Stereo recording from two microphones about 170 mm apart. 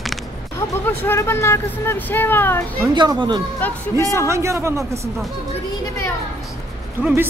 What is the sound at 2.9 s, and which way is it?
Speech, 25° right (ahead or behind).